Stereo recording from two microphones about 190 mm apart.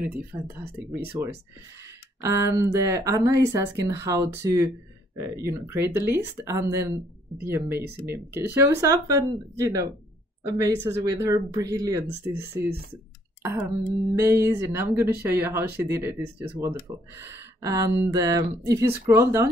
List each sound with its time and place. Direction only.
0.0 s speech: 10° right (ahead or behind)
2.2 s speech: 15° right (ahead or behind)